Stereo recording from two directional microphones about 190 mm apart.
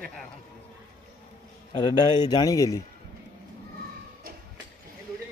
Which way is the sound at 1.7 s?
20° left (ahead or behind).